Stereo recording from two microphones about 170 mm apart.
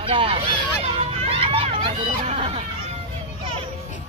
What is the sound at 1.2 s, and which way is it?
Run, 35° right (ahead or behind).